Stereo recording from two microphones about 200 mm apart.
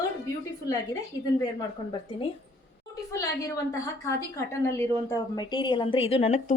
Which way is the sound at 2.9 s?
15° left (ahead or behind).